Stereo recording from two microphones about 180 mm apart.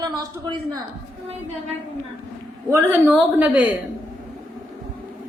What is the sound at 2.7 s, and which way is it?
A man's voice, 10° right (ahead or behind).